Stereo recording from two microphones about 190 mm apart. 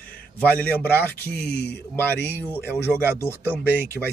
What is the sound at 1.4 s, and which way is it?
Speech, 55° left (ahead or behind).